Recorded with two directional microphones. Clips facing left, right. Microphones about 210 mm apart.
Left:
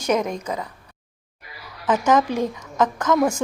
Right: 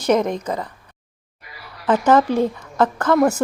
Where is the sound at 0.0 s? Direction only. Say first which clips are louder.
Right 4 dB; 10° left (ahead or behind).